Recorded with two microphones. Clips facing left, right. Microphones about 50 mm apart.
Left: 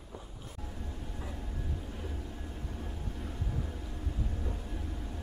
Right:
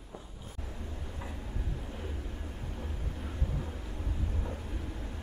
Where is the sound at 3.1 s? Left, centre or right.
Centre.